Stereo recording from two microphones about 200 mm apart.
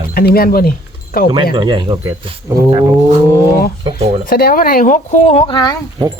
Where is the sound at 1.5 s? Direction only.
25° right (ahead or behind).